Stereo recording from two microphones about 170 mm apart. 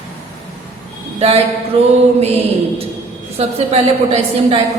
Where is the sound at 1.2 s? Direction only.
35° right (ahead or behind).